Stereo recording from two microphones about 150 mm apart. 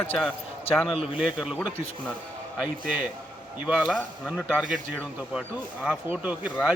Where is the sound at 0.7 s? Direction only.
40° left (ahead or behind).